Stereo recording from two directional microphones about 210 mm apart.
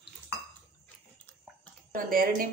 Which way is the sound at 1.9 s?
45° right (ahead or behind).